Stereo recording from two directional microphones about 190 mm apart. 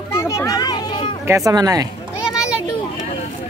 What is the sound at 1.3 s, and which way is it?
Speech, 20° right (ahead or behind).